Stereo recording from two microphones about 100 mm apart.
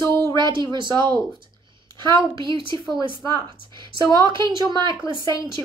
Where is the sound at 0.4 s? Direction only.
50° right (ahead or behind).